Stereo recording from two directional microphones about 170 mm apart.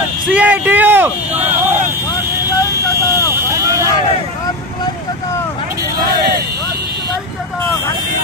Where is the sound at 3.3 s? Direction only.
20° right (ahead or behind).